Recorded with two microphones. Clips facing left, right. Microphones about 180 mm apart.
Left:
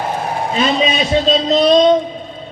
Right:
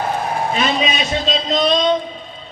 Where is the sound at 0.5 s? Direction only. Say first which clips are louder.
Left 6 dB; 35° left (ahead or behind).